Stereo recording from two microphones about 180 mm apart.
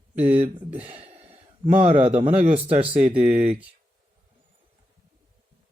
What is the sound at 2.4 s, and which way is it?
Speech, 35° right (ahead or behind).